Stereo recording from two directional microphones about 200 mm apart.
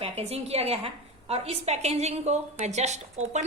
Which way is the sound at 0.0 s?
30° right (ahead or behind).